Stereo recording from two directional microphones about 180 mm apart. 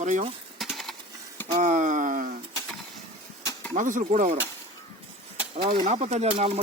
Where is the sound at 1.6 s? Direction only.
45° right (ahead or behind).